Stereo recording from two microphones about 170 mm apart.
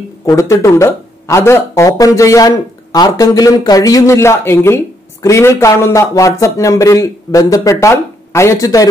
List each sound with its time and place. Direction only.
0.2 s speech: 20° left (ahead or behind)